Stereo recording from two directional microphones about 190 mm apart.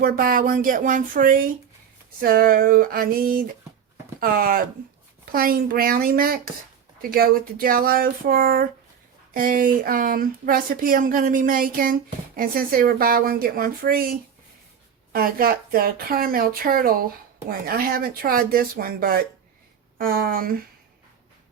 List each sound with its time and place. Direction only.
0.0 s speech: 50° right (ahead or behind)